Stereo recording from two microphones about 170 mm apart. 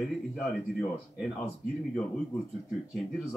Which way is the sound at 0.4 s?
Centre (ahead or behind).